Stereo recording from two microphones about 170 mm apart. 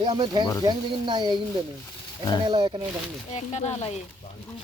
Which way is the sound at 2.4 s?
25° right (ahead or behind).